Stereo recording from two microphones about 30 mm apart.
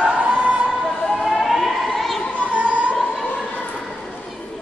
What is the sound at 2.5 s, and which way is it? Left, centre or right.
Opera, right.